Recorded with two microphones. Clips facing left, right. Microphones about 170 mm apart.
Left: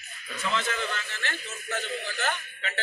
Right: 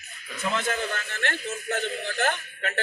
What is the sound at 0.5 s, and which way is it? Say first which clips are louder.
A man's voice: right 2 dB; 50° right (ahead or behind).